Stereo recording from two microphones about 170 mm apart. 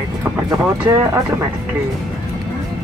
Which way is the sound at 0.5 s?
20° right (ahead or behind).